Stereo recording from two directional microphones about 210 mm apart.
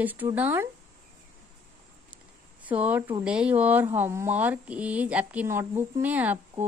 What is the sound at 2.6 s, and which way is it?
Speech, 5° right (ahead or behind).